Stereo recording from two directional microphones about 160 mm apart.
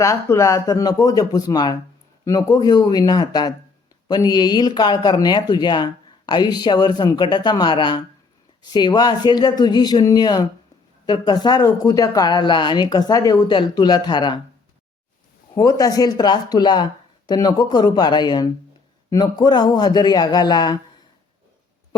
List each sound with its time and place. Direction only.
0.0 s speech: 20° left (ahead or behind)
15.5 s speech: 20° left (ahead or behind)